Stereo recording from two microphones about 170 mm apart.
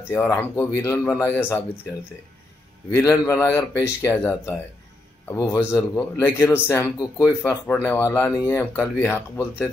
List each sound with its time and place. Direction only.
0.1 s a man's voice: 15° left (ahead or behind)
2.9 s a man's voice: 15° left (ahead or behind)